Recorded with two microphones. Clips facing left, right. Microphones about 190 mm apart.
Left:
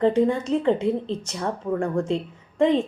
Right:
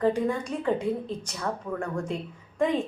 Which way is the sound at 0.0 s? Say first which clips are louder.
Left 5 dB; 25° left (ahead or behind).